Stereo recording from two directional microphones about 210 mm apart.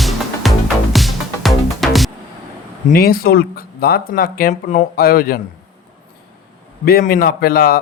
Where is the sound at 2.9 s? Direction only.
45° left (ahead or behind).